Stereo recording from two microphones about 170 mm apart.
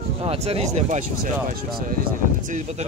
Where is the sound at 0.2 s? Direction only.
35° right (ahead or behind); by 2.0 s 55° right (ahead or behind).